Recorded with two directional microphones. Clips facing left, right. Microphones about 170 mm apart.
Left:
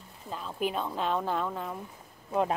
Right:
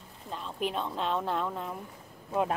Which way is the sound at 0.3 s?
5° left (ahead or behind).